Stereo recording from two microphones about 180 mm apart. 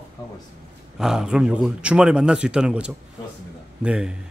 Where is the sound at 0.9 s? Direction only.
5° right (ahead or behind).